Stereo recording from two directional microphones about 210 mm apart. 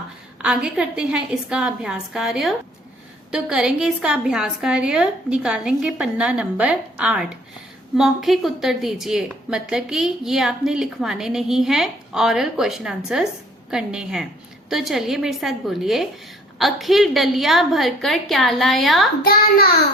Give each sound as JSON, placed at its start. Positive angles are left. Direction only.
{"t": 0.4, "sound": "a woman's voice", "side_deg": -5}
{"t": 19.2, "sound": "a child's voice", "side_deg": 45}